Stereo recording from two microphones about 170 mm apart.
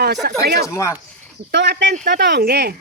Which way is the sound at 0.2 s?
65° right (ahead or behind).